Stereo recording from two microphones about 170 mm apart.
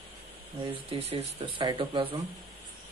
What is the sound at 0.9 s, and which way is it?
Speech, 35° right (ahead or behind).